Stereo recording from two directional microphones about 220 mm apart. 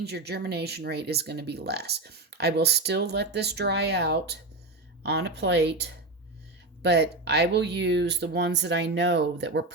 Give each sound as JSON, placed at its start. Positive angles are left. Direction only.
{"t": 0.0, "sound": "speech", "side_deg": -50}